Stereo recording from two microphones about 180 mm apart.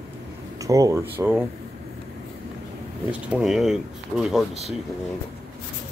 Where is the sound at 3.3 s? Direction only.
Centre (ahead or behind).